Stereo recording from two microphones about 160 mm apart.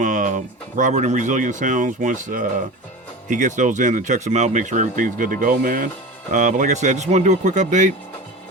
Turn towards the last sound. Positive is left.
turn(degrees=-50)  # may be behind; listen again after turning